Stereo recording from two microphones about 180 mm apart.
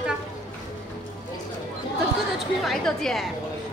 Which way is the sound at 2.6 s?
Centre (ahead or behind).